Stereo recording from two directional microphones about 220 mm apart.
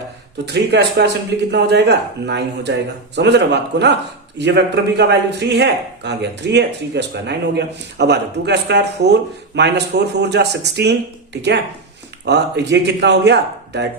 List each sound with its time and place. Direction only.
0.4 s speech: 50° right (ahead or behind)
12.2 s speech: 50° right (ahead or behind)